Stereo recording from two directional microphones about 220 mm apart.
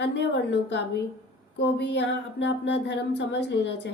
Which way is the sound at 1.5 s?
55° left (ahead or behind).